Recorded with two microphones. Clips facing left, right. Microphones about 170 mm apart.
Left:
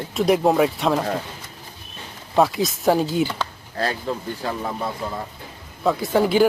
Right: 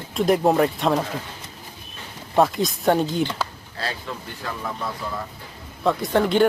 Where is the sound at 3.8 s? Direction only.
45° left (ahead or behind).